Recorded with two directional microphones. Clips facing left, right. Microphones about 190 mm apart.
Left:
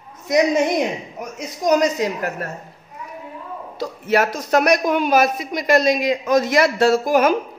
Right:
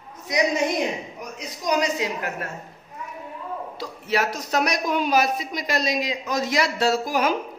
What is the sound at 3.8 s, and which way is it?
A man's voice, 50° left (ahead or behind).